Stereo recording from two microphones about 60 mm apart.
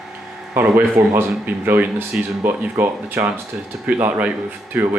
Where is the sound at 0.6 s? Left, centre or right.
Right.